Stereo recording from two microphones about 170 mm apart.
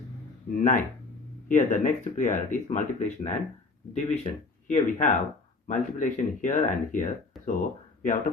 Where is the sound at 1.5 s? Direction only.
50° left (ahead or behind).